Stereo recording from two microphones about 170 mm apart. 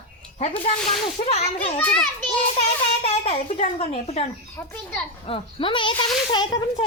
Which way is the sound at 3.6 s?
35° left (ahead or behind).